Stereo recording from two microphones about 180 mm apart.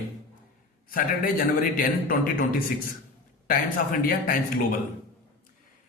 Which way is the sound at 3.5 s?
55° left (ahead or behind).